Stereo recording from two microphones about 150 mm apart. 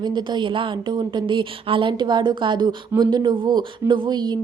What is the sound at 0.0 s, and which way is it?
Speech, 30° right (ahead or behind).